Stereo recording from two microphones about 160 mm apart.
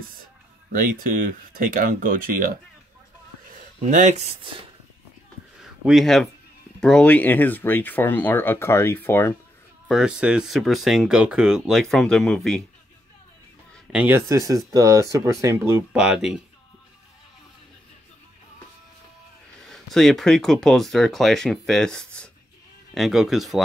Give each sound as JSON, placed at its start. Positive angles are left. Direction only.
{"t": 1.5, "sound": "speech", "side_deg": -60}
{"t": 3.9, "sound": "speech", "side_deg": -50}
{"t": 5.9, "sound": "speech", "side_deg": 0}
{"t": 9.8, "sound": "speech", "side_deg": -5}
{"t": 13.9, "sound": "speech", "side_deg": -15}
{"t": 16.0, "sound": "speech", "side_deg": -5}
{"t": 19.7, "sound": "speech", "side_deg": 0}